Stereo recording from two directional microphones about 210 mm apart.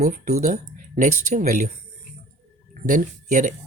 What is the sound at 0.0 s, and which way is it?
Speech, 35° right (ahead or behind).